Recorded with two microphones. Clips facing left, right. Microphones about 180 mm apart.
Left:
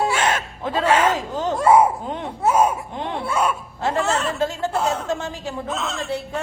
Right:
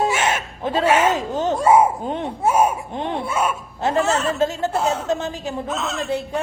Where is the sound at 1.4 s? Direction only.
20° right (ahead or behind).